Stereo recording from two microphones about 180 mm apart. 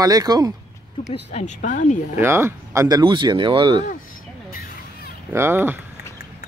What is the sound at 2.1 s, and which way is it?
Speech, 15° right (ahead or behind).